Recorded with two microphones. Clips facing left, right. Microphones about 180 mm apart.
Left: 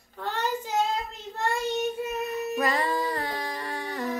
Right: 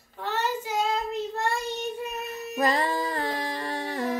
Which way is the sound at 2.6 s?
25° right (ahead or behind).